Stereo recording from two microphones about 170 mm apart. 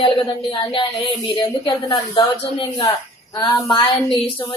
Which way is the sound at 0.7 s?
30° left (ahead or behind).